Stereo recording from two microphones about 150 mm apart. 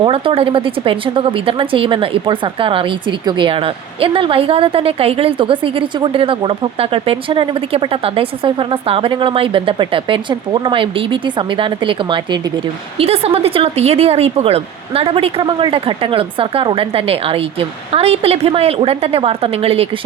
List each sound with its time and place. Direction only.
0.0 s speech: 35° right (ahead or behind)